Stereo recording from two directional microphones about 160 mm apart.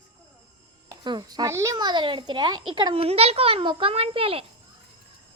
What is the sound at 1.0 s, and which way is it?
A child's voice, 25° right (ahead or behind).